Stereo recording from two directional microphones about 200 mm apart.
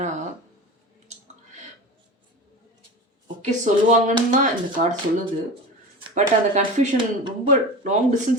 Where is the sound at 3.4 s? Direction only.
35° right (ahead or behind).